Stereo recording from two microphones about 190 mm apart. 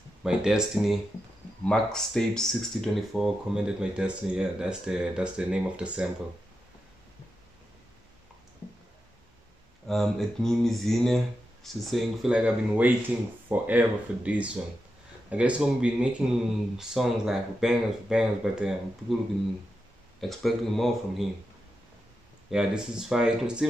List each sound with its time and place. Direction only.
0.2 s speech: 5° right (ahead or behind)
9.8 s speech: centre (ahead or behind)
20.2 s speech: centre (ahead or behind)
22.5 s speech: 5° right (ahead or behind)